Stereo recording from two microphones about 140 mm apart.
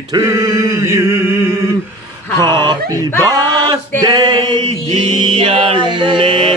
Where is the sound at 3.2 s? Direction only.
30° right (ahead or behind).